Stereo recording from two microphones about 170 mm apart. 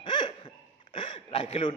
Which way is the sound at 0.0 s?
30° left (ahead or behind).